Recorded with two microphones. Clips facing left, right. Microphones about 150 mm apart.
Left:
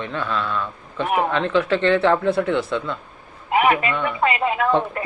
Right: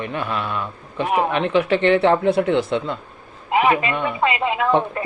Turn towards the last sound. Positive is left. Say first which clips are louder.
# right 1 dB
turn(degrees=-20)  # may be behind; listen again after turning